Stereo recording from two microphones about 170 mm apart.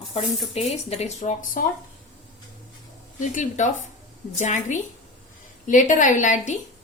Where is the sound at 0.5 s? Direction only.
40° left (ahead or behind).